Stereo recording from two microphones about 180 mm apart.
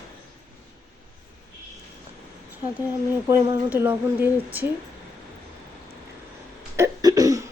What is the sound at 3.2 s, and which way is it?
A woman's voice, 15° right (ahead or behind).